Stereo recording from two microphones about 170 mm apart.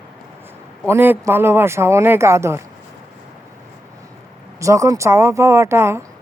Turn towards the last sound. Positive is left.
turn(degrees=-15)  # may be behind; listen again after turning